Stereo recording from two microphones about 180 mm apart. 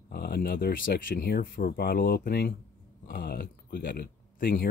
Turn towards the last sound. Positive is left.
turn(degrees=55)  # may be behind; listen again after turning